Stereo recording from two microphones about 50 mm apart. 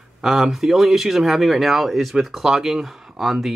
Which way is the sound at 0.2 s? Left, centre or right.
Centre.